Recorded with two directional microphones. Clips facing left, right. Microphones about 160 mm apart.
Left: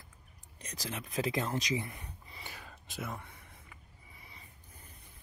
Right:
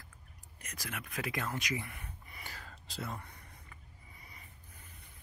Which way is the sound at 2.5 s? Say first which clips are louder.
Left 1 dB; 15° left (ahead or behind).